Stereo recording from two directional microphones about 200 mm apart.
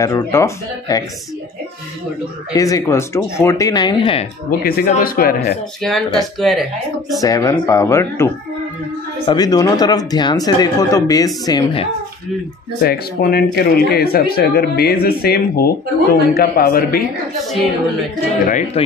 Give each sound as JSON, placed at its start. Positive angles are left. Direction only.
{"t": 0.0, "sound": "speech", "side_deg": 15}
{"t": 2.5, "sound": "speech", "side_deg": 15}
{"t": 4.5, "sound": "speech", "side_deg": 50}
{"t": 5.8, "sound": "speech", "side_deg": 0}
{"t": 7.2, "sound": "speech", "side_deg": 15}
{"t": 12.8, "sound": "speech", "side_deg": 50}
{"t": 18.8, "sound": "speech", "side_deg": 30}